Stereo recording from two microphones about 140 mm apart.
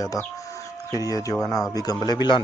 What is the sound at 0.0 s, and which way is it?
Speech, 25° left (ahead or behind).